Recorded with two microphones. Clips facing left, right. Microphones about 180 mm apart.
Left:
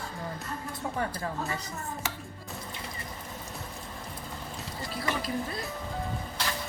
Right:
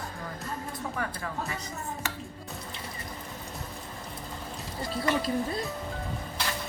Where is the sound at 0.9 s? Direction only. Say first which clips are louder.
Left 4 dB; 30° left (ahead or behind).